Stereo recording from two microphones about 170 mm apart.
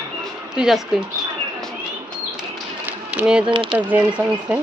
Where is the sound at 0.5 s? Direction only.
5° right (ahead or behind).